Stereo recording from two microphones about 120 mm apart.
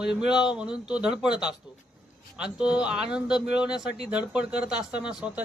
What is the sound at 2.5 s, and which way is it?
Speech, 10° right (ahead or behind).